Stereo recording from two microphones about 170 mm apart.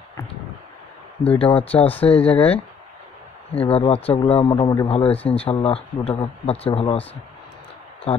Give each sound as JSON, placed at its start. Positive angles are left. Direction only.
{"t": 1.2, "sound": "speech", "side_deg": 35}
{"t": 2.1, "sound": "speech", "side_deg": 10}
{"t": 3.5, "sound": "speech", "side_deg": 35}
{"t": 8.1, "sound": "speech", "side_deg": 35}